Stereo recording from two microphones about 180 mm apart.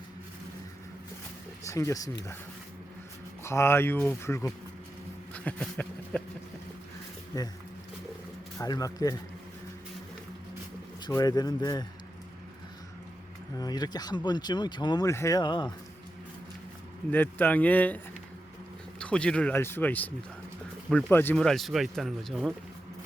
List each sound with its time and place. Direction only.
1.6 s speech: 15° left (ahead or behind)
3.4 s speech: 15° left (ahead or behind)
7.3 s speech: 20° left (ahead or behind)
8.5 s speech: 20° left (ahead or behind)
11.0 s speech: 20° left (ahead or behind)
13.6 s speech: 20° left (ahead or behind)
17.1 s speech: 10° left (ahead or behind)